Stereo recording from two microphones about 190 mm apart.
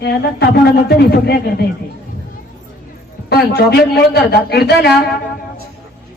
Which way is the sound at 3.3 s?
60° left (ahead or behind).